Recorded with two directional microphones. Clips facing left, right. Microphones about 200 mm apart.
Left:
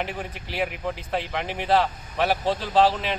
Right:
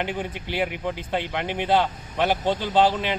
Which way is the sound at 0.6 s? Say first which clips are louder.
Right 1 dB; centre (ahead or behind).